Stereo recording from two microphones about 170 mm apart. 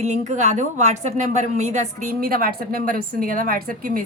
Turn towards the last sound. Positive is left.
turn(degrees=-55)  # may be behind; listen again after turning